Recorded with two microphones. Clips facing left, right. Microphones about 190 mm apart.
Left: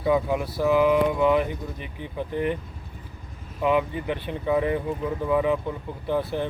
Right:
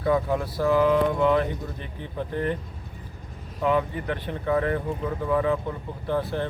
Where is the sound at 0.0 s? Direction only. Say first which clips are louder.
Left 1 dB; 10° left (ahead or behind).